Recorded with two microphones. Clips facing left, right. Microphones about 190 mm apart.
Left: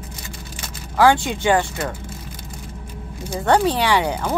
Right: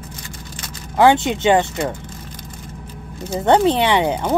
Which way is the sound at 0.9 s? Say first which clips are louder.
Right 2 dB; 20° right (ahead or behind).